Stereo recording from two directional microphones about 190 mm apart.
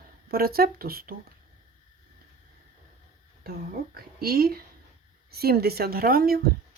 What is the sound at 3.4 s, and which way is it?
Speech, 50° right (ahead or behind).